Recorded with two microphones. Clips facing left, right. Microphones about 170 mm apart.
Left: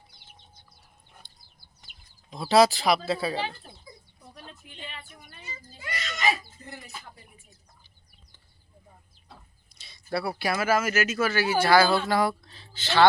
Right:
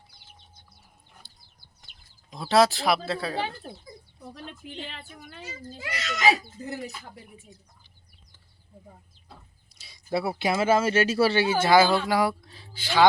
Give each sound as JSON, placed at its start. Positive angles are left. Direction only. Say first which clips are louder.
{"t": 1.2, "sound": "chicken", "louder": "right 1 dB", "side_deg": -5}
{"t": 2.3, "sound": "speech", "louder": "left 1 dB", "side_deg": 0}
{"t": 4.6, "sound": "a child's voice", "louder": "right 4 dB", "side_deg": -90}
{"t": 9.7, "sound": "a sound", "louder": "right 2 dB", "side_deg": -10}
{"t": 10.2, "sound": "speech", "louder": "right 3 dB", "side_deg": -20}